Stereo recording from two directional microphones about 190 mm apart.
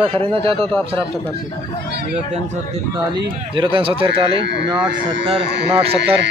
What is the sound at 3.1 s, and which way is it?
Speech, 25° right (ahead or behind).